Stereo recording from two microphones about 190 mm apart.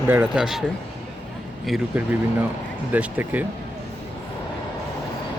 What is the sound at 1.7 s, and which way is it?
Speech, 10° right (ahead or behind).